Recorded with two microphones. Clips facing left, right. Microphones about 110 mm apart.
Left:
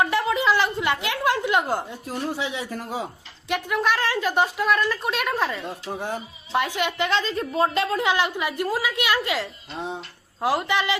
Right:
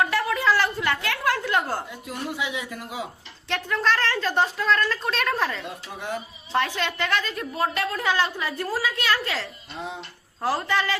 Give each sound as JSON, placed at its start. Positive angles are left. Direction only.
{"t": 0.0, "sound": "a sound", "side_deg": 20}
{"t": 2.0, "sound": "a man's voice", "side_deg": 30}
{"t": 3.5, "sound": "a woman's voice", "side_deg": 10}
{"t": 5.6, "sound": "a man's voice", "side_deg": 30}
{"t": 6.5, "sound": "a woman's voice", "side_deg": 15}